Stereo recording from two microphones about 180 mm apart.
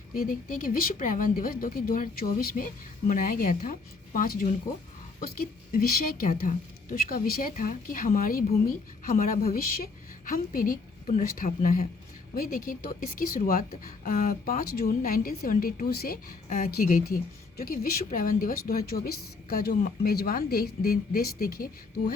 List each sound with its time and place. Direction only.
0.1 s a woman's voice: 50° left (ahead or behind)